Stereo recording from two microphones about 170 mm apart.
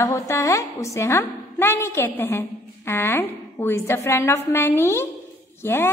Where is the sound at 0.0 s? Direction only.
20° left (ahead or behind).